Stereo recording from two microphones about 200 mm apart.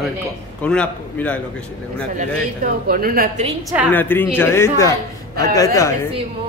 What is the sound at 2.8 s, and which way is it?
Speech, 45° right (ahead or behind).